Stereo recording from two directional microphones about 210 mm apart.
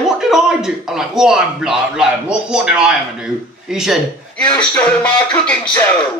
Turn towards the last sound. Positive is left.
turn(degrees=5)  # may be behind; listen again after turning